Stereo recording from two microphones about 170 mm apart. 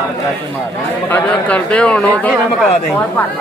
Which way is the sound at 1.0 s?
10° left (ahead or behind).